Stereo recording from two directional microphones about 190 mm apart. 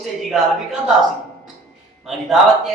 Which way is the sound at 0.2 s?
Centre (ahead or behind).